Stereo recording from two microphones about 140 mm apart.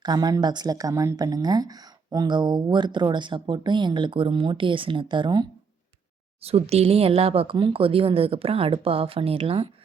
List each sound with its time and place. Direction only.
0.0 s speech: 30° right (ahead or behind)
6.4 s speech: 45° right (ahead or behind)